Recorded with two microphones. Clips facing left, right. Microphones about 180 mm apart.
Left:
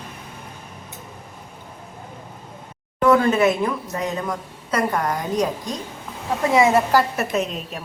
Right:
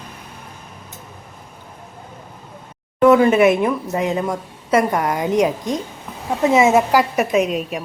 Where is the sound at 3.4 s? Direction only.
20° right (ahead or behind).